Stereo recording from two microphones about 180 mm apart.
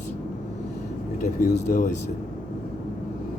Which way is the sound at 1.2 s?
45° left (ahead or behind).